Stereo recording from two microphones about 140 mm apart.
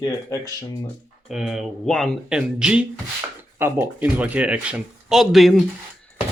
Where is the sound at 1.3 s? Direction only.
5° right (ahead or behind).